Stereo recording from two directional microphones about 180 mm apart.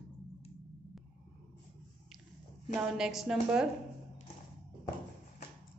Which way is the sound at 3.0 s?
Centre (ahead or behind).